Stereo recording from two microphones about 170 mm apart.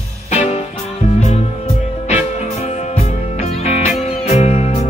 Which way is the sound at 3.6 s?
40° left (ahead or behind).